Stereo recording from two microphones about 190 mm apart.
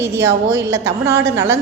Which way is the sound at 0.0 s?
15° right (ahead or behind).